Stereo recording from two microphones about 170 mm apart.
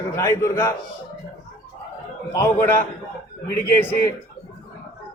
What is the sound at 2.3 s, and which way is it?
A man's voice, 15° left (ahead or behind).